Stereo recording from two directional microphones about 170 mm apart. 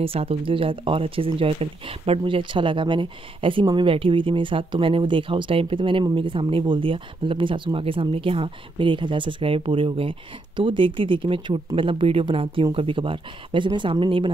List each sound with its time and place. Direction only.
0.0 s speech: 35° right (ahead or behind)